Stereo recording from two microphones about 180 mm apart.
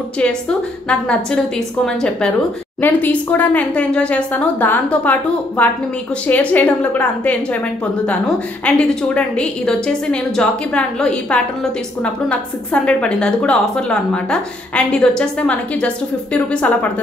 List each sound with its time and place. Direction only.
0.2 s a woman's voice: 5° left (ahead or behind)
8.6 s a woman's voice: 5° left (ahead or behind)